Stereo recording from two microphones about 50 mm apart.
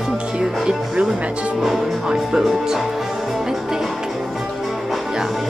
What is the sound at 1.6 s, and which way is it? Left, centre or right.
Speech, centre.